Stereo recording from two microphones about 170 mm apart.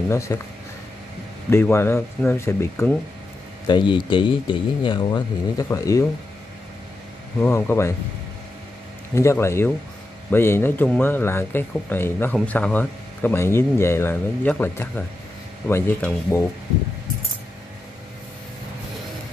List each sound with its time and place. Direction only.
0.1 s speech: 15° left (ahead or behind)
1.5 s speech: 15° left (ahead or behind)
3.6 s speech: 25° left (ahead or behind)
7.3 s speech: 15° left (ahead or behind)
9.1 s speech: 15° left (ahead or behind)